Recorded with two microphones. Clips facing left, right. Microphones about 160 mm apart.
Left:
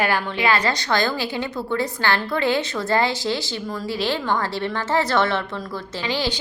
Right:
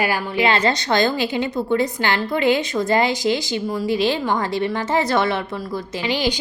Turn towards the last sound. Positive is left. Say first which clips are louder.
# right 3 dB
turn(degrees=-15)  # may be behind; listen again after turning